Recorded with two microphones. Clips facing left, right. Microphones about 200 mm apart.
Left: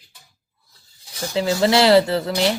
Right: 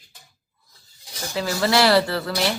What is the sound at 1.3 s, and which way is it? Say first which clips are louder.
A woman's voice: left 4 dB; 20° left (ahead or behind).